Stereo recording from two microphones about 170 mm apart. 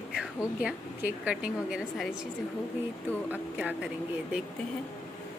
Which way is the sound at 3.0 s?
10° left (ahead or behind).